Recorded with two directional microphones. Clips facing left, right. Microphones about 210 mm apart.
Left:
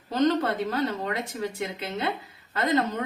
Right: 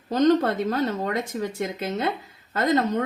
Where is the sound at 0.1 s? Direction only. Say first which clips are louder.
Right 4 dB; 45° right (ahead or behind).